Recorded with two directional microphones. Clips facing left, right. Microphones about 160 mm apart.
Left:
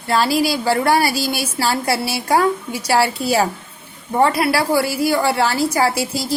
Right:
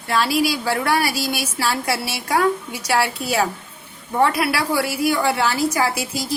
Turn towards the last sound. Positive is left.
turn(degrees=35)  # may be behind; listen again after turning